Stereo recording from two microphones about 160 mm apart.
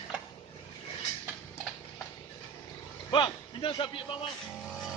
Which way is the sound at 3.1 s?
30° left (ahead or behind).